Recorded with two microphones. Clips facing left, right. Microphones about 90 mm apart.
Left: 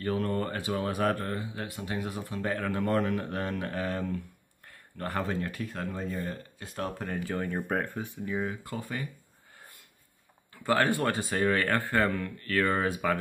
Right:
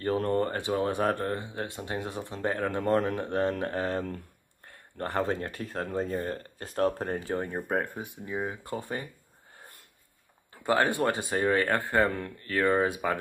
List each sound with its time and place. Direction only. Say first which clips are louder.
0.0 s speech: right 3 dB; 30° right (ahead or behind)
10.5 s speech: even; 25° right (ahead or behind)